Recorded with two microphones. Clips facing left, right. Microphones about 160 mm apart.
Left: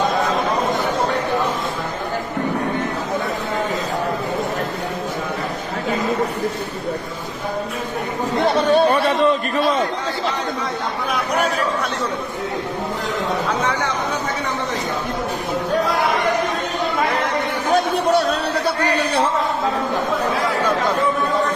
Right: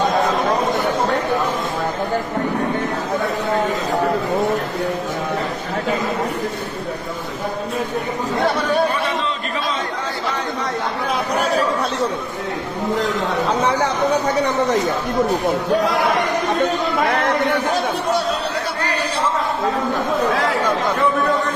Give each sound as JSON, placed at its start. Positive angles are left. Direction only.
{"t": 8.5, "sound": "chatter", "side_deg": 30}
{"t": 9.0, "sound": "a sound", "side_deg": 65}
{"t": 11.1, "sound": "chatter", "side_deg": -35}
{"t": 13.5, "sound": "chatter", "side_deg": -35}